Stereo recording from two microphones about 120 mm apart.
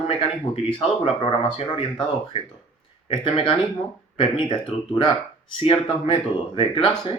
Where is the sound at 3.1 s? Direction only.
45° left (ahead or behind).